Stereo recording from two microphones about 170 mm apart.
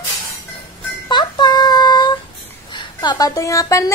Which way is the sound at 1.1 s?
25° left (ahead or behind).